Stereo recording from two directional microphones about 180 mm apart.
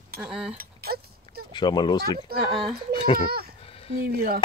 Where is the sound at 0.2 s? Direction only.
5° right (ahead or behind).